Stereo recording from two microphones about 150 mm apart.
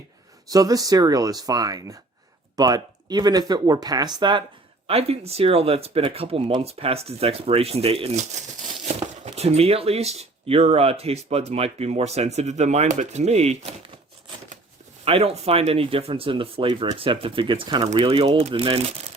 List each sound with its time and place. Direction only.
0.5 s speech: 25° right (ahead or behind)
4.9 s speech: 40° right (ahead or behind)
15.0 s speech: 40° right (ahead or behind)